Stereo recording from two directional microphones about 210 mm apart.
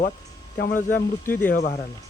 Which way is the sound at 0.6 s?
40° left (ahead or behind).